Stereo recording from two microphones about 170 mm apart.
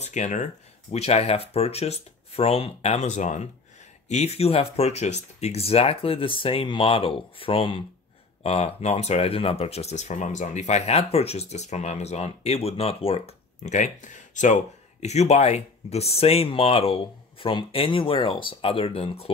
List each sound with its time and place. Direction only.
0.0 s speech: 45° left (ahead or behind)